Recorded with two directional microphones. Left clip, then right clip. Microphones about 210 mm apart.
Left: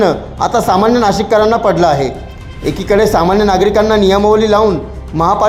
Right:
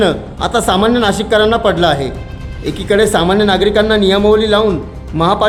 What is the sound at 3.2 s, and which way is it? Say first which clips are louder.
Speech: left 1 dB; 15° right (ahead or behind).